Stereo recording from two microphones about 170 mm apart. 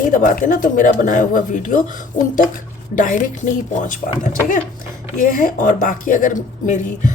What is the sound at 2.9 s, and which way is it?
Speech, 50° left (ahead or behind).